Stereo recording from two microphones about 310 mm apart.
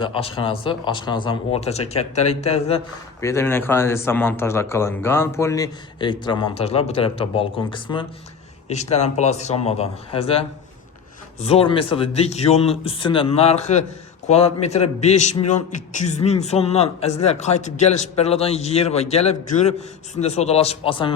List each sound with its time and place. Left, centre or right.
0.0 s a man's voice: centre
11.3 s a man's voice: centre